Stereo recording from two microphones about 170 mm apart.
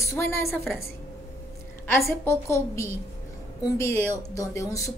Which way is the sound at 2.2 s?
15° left (ahead or behind).